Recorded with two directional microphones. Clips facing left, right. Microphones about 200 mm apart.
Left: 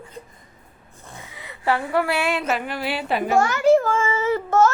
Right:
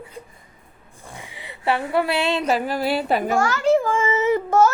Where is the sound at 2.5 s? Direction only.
35° right (ahead or behind).